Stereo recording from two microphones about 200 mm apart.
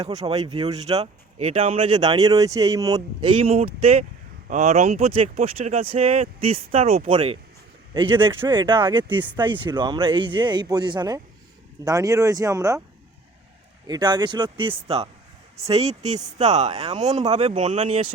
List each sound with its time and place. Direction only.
0.0 s speech: 20° right (ahead or behind)
13.8 s speech: 20° right (ahead or behind)